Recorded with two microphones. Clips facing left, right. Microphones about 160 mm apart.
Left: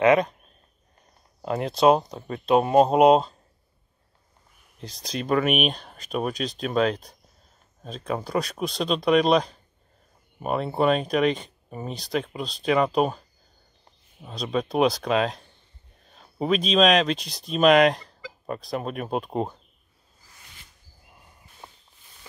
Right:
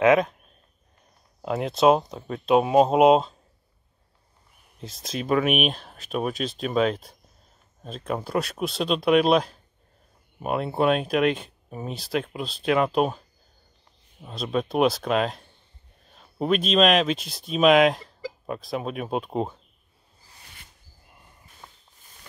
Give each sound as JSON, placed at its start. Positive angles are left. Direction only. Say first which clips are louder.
{"t": 0.0, "sound": "speech", "louder": "even", "side_deg": 0}
{"t": 1.4, "sound": "speech", "louder": "even", "side_deg": 0}
{"t": 4.7, "sound": "speech", "louder": "even", "side_deg": 0}
{"t": 14.2, "sound": "speech", "louder": "even", "side_deg": 0}
{"t": 21.6, "sound": "walk", "louder": "left 2 dB", "side_deg": 20}